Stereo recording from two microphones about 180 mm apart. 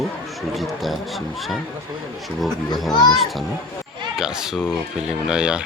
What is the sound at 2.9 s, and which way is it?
Speech, 25° left (ahead or behind).